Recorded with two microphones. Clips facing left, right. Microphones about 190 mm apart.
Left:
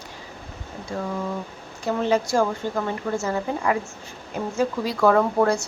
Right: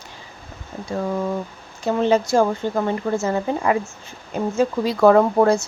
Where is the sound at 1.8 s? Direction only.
25° right (ahead or behind).